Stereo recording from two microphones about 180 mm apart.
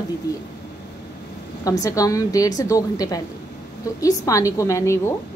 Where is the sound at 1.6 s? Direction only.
20° left (ahead or behind).